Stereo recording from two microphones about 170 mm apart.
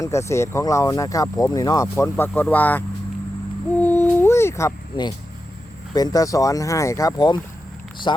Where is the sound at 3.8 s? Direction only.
10° left (ahead or behind).